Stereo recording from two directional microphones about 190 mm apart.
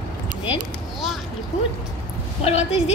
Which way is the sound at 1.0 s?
Centre (ahead or behind).